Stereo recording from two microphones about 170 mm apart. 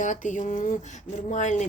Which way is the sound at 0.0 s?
45° left (ahead or behind).